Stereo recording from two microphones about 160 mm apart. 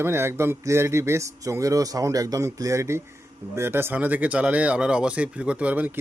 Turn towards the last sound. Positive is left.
turn(degrees=-10)  # may be behind; listen again after turning